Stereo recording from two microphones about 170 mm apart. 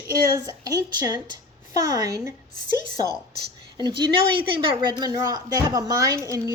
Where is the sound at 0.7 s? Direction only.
20° right (ahead or behind).